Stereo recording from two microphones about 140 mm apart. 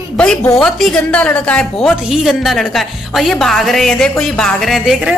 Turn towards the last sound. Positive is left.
turn(degrees=0)  # may be behind; listen again after turning